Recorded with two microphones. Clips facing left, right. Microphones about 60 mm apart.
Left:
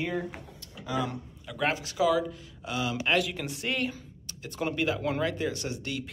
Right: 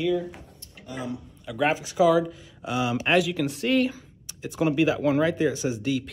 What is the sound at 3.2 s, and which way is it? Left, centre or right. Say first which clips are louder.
Speech: right 7 dB; centre.